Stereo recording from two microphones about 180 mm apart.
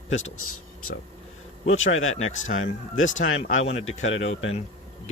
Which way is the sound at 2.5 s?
45° left (ahead or behind).